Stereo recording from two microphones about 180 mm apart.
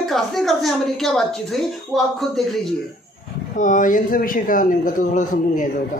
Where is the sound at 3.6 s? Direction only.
45° left (ahead or behind).